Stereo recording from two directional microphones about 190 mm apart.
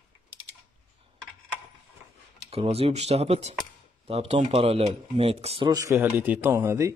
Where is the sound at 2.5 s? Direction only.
30° right (ahead or behind).